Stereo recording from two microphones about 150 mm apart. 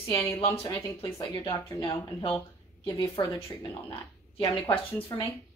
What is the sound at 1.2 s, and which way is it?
A woman's voice, 30° left (ahead or behind).